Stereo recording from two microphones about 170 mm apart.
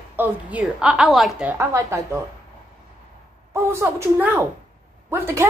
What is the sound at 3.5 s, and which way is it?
A woman's voice, 15° right (ahead or behind).